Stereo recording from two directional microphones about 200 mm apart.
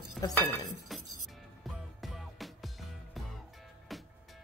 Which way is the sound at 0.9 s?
Centre (ahead or behind).